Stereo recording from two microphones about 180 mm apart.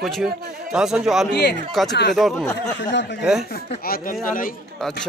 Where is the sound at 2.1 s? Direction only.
Centre (ahead or behind).